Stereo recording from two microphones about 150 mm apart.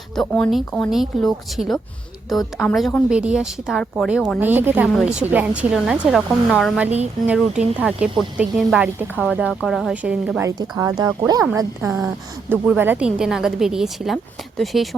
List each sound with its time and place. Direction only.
0.2 s a woman's voice: 5° left (ahead or behind)
4.4 s a woman's voice: 10° right (ahead or behind)
10.4 s a woman's voice: 25° right (ahead or behind); by 14.8 s centre (ahead or behind)